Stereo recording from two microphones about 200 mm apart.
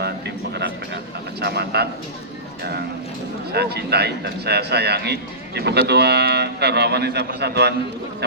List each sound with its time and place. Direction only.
1.4 s a man's voice: 55° right (ahead or behind)
3.5 s a man's voice: 55° right (ahead or behind)